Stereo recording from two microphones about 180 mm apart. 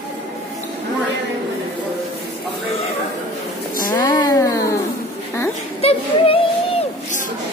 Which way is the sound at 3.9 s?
20° left (ahead or behind).